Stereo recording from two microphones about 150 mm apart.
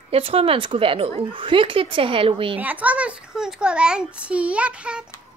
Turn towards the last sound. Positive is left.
turn(degrees=-5)  # may be behind; listen again after turning